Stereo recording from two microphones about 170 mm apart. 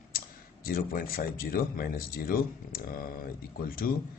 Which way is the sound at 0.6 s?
60° left (ahead or behind).